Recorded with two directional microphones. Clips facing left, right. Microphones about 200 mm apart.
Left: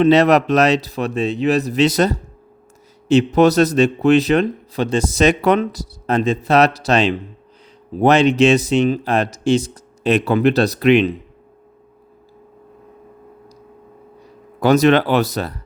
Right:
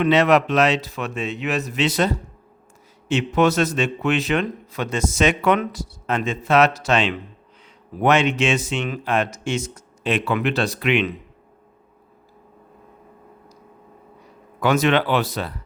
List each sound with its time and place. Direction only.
0.0 s speech: 35° left (ahead or behind)
14.6 s speech: 40° left (ahead or behind)